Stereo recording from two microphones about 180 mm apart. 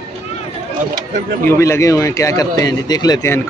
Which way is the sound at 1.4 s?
15° left (ahead or behind).